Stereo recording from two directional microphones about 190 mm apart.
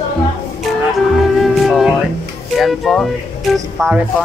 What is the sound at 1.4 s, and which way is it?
Music, centre (ahead or behind).